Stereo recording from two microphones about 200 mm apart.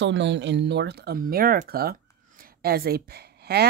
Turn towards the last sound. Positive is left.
turn(degrees=-55)  # may be behind; listen again after turning